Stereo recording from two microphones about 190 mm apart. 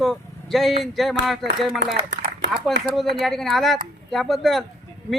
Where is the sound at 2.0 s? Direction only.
65° right (ahead or behind).